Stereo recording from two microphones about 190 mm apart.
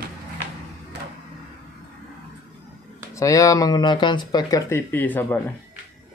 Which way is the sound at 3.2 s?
15° left (ahead or behind).